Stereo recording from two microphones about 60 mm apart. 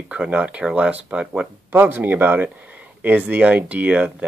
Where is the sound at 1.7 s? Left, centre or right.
Right.